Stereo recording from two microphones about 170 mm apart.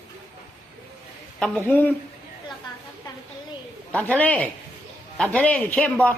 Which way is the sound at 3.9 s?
10° left (ahead or behind).